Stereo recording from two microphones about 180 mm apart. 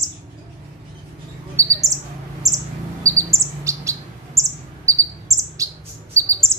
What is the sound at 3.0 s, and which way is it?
Bird, 15° right (ahead or behind).